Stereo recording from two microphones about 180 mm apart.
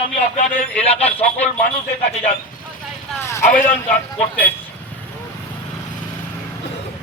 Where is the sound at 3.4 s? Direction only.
50° left (ahead or behind).